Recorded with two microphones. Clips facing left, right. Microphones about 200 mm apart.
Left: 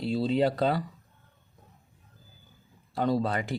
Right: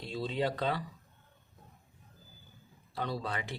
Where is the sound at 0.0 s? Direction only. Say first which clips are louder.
Left 8 dB; 35° left (ahead or behind).